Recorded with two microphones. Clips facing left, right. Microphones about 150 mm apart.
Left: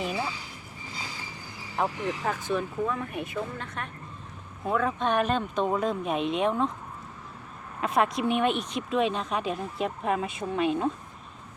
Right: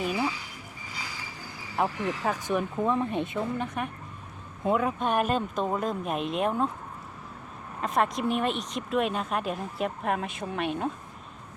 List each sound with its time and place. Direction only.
1.8 s speech: 10° right (ahead or behind)
7.8 s speech: centre (ahead or behind)